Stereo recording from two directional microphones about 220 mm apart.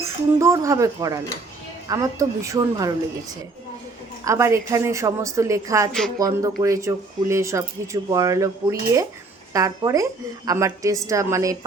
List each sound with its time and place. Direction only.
0.0 s speech: 15° right (ahead or behind)
4.2 s speech: 15° right (ahead or behind)